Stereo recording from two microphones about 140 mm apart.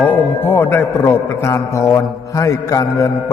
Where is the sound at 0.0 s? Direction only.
15° left (ahead or behind).